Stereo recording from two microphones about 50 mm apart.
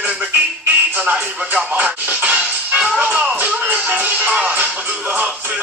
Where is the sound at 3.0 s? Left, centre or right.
Right.